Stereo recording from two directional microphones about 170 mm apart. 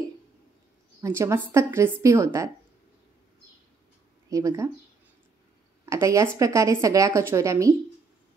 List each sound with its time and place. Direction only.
1.0 s speech: 15° right (ahead or behind)
4.3 s speech: 20° right (ahead or behind)
5.9 s speech: 15° right (ahead or behind)